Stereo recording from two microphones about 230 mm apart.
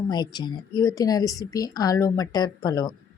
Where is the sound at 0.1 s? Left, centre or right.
Centre.